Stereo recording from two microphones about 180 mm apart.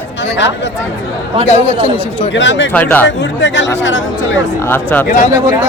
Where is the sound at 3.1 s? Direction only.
85° left.